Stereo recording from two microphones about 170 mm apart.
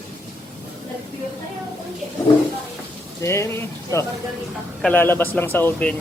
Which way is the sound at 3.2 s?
15° left (ahead or behind).